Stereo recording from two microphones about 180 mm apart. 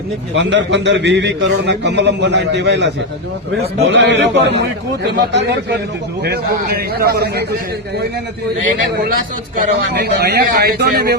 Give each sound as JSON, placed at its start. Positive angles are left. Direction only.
{"t": 0.3, "sound": "a man's voice", "side_deg": -80}
{"t": 9.6, "sound": "a man's voice", "side_deg": -60}